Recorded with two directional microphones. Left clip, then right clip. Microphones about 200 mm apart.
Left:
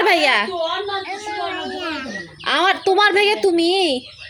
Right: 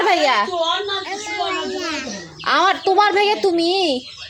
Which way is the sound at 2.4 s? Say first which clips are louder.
Right 1 dB; 15° left (ahead or behind).